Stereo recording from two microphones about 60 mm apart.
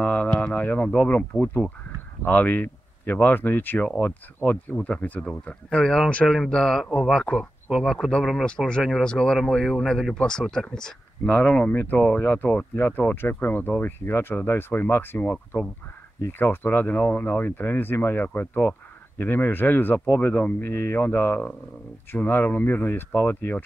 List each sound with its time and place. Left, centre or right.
0.0 s a sound: left
0.9 s speech: left
4.7 s speech: centre
8.5 s speech: centre
12.2 s speech: left